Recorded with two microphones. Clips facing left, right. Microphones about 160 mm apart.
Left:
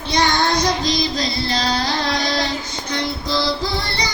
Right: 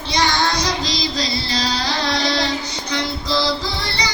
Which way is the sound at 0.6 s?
50° left (ahead or behind).